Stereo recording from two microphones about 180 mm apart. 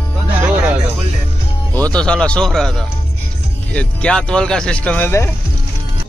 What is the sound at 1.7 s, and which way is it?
Speech, 10° left (ahead or behind).